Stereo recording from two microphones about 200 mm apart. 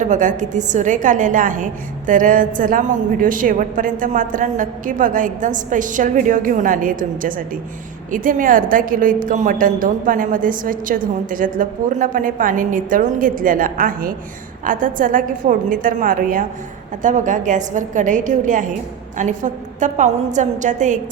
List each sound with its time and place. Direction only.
0.0 s a woman's voice: 40° right (ahead or behind)